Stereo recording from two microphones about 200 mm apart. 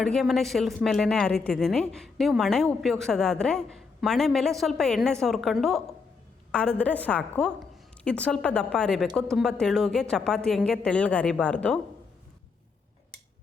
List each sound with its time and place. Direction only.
0.0 s a woman's voice: centre (ahead or behind)